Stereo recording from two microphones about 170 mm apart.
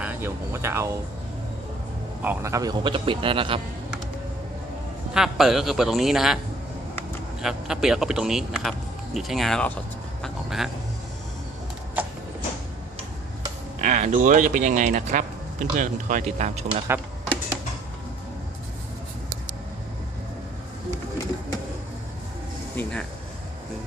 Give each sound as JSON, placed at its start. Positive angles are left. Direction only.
{"t": 0.0, "sound": "a sound", "side_deg": -10}
{"t": 2.2, "sound": "a man's voice", "side_deg": -15}
{"t": 5.1, "sound": "a man's voice", "side_deg": 0}
{"t": 7.4, "sound": "a man's voice", "side_deg": -5}
{"t": 13.8, "sound": "speech", "side_deg": -45}
{"t": 22.7, "sound": "air conditioning", "side_deg": 10}